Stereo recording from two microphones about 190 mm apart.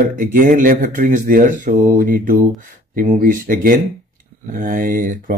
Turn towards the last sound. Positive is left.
turn(degrees=-45)  # may be behind; listen again after turning